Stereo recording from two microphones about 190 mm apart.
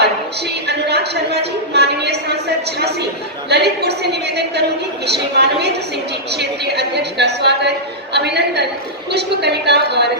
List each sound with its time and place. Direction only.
0.7 s a woman's voice: 60° right (ahead or behind)